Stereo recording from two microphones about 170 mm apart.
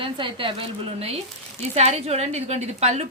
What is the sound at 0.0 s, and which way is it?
A woman's voice, 30° right (ahead or behind).